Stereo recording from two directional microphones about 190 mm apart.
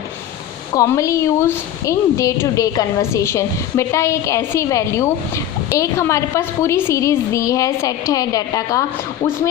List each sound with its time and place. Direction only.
0.7 s a woman's voice: 15° left (ahead or behind)